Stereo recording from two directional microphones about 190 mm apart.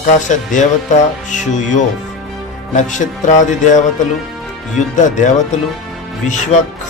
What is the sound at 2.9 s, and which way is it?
Music, 40° left (ahead or behind).